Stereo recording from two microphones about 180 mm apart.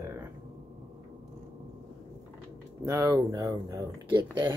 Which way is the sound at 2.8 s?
15° right (ahead or behind).